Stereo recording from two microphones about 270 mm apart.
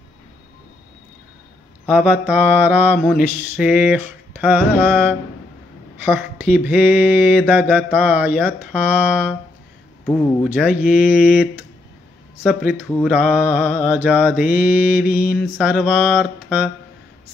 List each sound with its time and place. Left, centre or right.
1.9 s mantra: centre
4.3 s carnatic music: centre
4.8 s mantra: centre
10.7 s mantra: left
12.4 s mantra: centre